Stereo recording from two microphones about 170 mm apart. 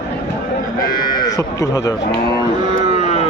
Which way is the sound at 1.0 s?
25° left (ahead or behind).